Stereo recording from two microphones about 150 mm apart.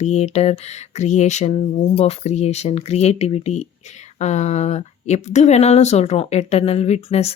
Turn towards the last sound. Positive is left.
turn(degrees=45)  # may be behind; listen again after turning